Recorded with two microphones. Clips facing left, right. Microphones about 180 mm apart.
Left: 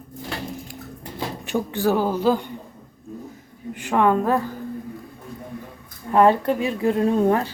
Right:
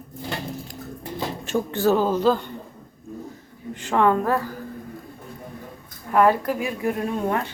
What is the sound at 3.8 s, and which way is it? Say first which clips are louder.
Speech: left 1 dB; 15° left (ahead or behind).